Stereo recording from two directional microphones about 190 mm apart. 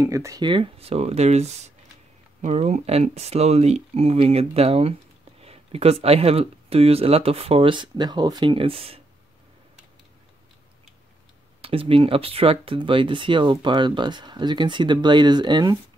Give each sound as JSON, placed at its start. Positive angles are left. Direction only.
{"t": 0.0, "sound": "speech", "side_deg": -15}
{"t": 11.6, "sound": "speech", "side_deg": -30}